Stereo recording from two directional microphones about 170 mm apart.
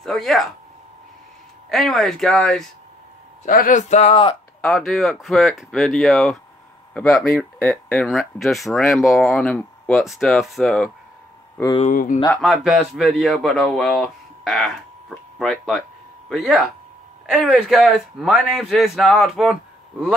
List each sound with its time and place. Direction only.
0.0 s speech: centre (ahead or behind)
1.7 s speech: centre (ahead or behind)
3.4 s speech: 55° left (ahead or behind); by 4.4 s 30° left (ahead or behind)
4.6 s speech: centre (ahead or behind)
11.8 s speech: 50° left (ahead or behind)
12.4 s speech: centre (ahead or behind)